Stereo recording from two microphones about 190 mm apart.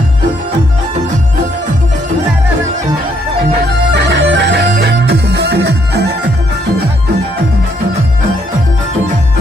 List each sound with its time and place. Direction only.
3.9 s music: 65° right (ahead or behind)